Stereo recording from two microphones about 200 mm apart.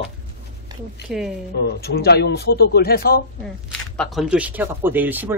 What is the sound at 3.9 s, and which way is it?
Speech, 5° left (ahead or behind).